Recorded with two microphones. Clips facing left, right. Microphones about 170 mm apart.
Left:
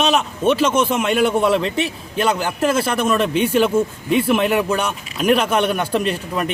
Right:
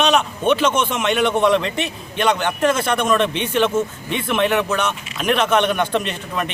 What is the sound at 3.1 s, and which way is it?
Speech, 5° left (ahead or behind).